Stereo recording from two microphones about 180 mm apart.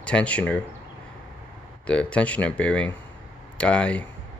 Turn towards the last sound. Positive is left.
turn(degrees=5)  # may be behind; listen again after turning